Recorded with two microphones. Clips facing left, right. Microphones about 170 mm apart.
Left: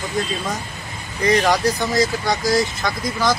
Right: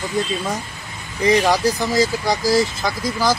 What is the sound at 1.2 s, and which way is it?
Speech, centre (ahead or behind).